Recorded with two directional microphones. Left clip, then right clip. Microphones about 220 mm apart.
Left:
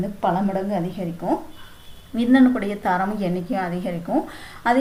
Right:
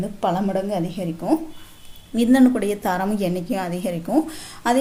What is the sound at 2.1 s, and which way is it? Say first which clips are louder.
A woman's voice: right 1 dB; 45° right (ahead or behind).